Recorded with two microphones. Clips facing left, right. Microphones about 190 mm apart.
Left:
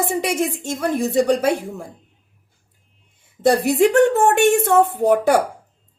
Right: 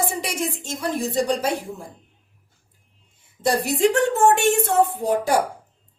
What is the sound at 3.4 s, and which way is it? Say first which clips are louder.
Speech: left 5 dB; 55° left (ahead or behind).